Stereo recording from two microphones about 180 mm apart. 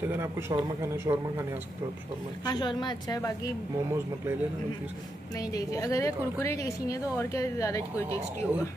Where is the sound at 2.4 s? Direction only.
25° left (ahead or behind).